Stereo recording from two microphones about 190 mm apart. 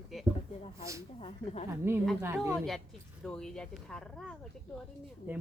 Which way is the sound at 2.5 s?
Centre (ahead or behind).